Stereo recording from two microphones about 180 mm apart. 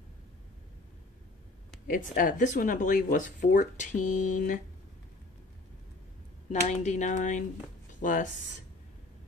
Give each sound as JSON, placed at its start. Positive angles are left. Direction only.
{"t": 1.9, "sound": "speech", "side_deg": 50}
{"t": 6.5, "sound": "speech", "side_deg": 40}